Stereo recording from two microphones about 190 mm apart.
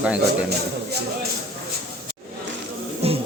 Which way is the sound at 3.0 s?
30° right (ahead or behind).